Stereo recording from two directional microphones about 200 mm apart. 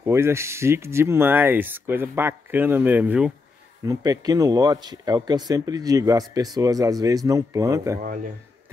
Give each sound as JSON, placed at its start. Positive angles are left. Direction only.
{"t": 0.0, "sound": "speech", "side_deg": -15}
{"t": 3.8, "sound": "speech", "side_deg": -15}